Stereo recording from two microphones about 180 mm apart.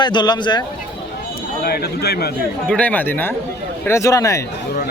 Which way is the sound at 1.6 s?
60° left (ahead or behind).